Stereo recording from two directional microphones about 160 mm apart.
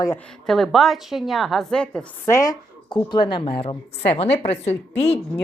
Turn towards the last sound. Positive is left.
turn(degrees=45)  # may be behind; listen again after turning